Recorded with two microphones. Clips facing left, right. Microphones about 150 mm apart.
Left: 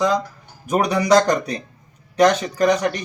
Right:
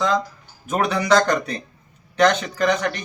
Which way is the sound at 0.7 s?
10° left (ahead or behind).